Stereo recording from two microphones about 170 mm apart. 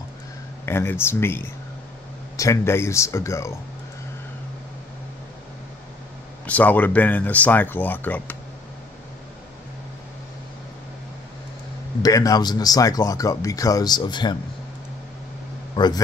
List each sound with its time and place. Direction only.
0.7 s speech: 15° left (ahead or behind)
6.4 s speech: 10° left (ahead or behind)
12.0 s speech: 20° left (ahead or behind)
15.7 s a man's voice: 25° left (ahead or behind)